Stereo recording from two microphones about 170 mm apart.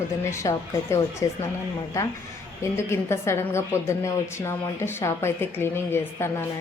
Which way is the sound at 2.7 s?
15° left (ahead or behind).